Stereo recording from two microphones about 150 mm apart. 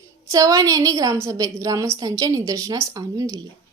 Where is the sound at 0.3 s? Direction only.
25° right (ahead or behind).